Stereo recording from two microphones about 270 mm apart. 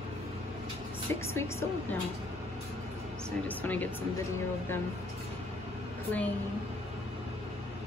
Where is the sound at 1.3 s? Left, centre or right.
Centre.